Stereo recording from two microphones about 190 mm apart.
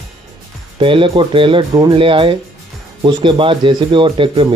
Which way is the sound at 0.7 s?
25° right (ahead or behind).